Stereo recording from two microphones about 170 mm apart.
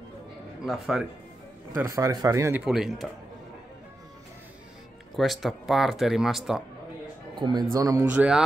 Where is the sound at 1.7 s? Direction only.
20° right (ahead or behind).